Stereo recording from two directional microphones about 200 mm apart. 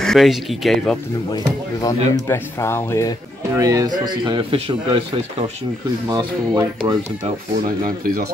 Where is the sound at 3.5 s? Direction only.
15° right (ahead or behind).